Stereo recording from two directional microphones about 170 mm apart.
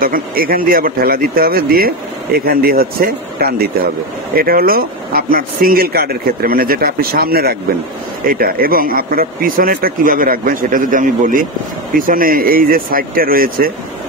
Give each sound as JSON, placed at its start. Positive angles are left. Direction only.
{"t": 0.0, "sound": "speech", "side_deg": -60}